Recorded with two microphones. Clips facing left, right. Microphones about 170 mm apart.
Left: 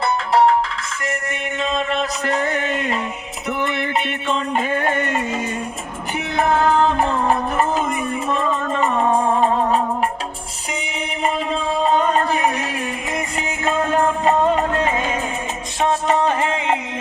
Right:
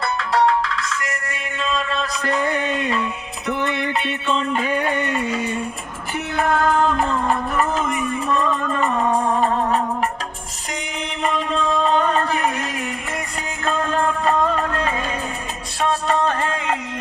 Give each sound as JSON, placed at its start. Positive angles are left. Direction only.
{"t": 1.3, "sound": "music", "side_deg": 15}
{"t": 2.5, "sound": "a sound", "side_deg": -15}
{"t": 4.8, "sound": "music", "side_deg": 45}
{"t": 6.3, "sound": "music", "side_deg": 15}
{"t": 11.2, "sound": "music", "side_deg": 10}